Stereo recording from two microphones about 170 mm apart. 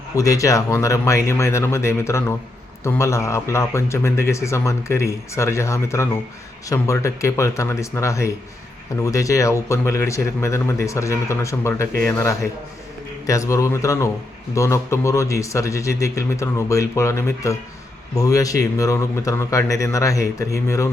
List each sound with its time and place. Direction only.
0.2 s a man's voice: 20° left (ahead or behind)